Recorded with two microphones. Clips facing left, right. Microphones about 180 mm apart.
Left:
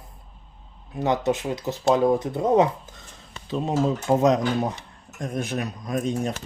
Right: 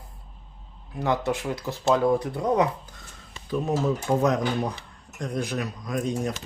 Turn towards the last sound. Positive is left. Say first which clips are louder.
# left 2 dB
turn(degrees=25)  # may be behind; listen again after turning